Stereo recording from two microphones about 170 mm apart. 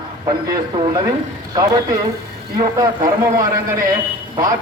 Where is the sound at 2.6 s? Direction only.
20° right (ahead or behind).